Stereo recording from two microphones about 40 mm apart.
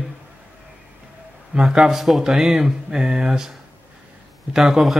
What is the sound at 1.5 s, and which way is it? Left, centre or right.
Speech, centre.